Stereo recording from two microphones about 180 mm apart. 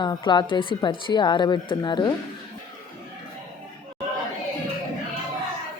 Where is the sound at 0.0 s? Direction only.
25° left (ahead or behind).